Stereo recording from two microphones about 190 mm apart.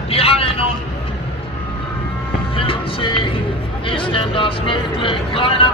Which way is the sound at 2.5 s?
30° left (ahead or behind).